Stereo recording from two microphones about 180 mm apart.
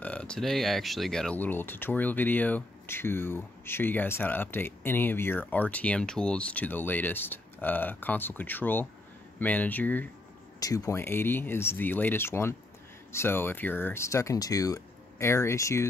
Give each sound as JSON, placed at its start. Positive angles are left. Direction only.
{"t": 0.0, "sound": "speech", "side_deg": 5}